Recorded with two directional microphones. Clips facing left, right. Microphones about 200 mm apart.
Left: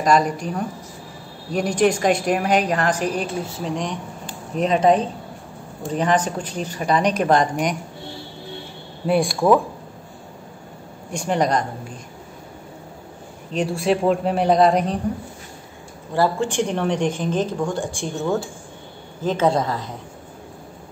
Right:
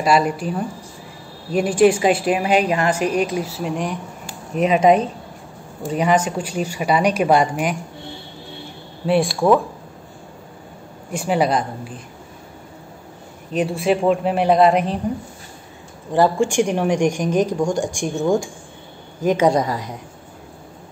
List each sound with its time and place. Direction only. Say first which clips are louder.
0.0 s a woman's voice: right 1 dB; 10° right (ahead or behind)
1.5 s a man's voice: right 4 dB; 5° right (ahead or behind)
9.0 s a man's voice: right 1 dB; centre (ahead or behind)
11.1 s a woman's voice: right 2 dB; 5° right (ahead or behind)
13.5 s a man's voice: right 2 dB; centre (ahead or behind)
16.1 s a woman's voice: right 4 dB; 15° right (ahead or behind)